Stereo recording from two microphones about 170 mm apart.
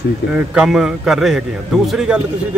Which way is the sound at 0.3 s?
5° right (ahead or behind).